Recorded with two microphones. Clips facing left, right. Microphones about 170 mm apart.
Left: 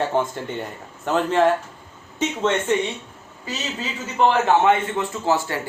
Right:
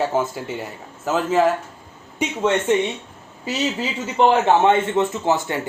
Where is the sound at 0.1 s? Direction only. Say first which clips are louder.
Even; 5° right (ahead or behind).